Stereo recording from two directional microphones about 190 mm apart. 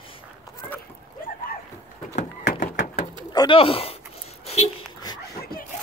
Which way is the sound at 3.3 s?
25° left (ahead or behind).